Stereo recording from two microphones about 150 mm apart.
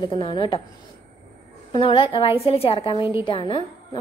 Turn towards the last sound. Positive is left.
turn(degrees=35)  # may be behind; listen again after turning